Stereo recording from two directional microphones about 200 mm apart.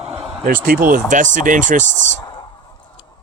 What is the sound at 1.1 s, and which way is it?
Speech, 40° right (ahead or behind).